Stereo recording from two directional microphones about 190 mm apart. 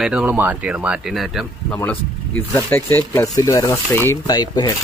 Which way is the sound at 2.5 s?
10° left (ahead or behind).